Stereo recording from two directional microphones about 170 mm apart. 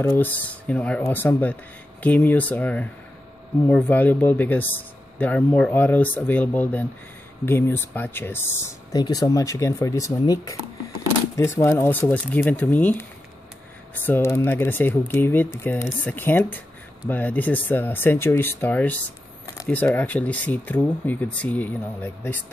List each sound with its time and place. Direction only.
0.0 s speech: 10° left (ahead or behind)
14.0 s speech: 15° left (ahead or behind)
19.4 s a sound: 20° left (ahead or behind)
19.7 s speech: 10° left (ahead or behind)